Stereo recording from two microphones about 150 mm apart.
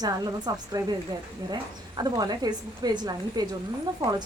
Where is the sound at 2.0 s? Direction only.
25° right (ahead or behind).